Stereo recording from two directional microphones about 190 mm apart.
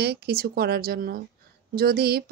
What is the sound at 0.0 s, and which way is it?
A woman's voice, 60° right (ahead or behind).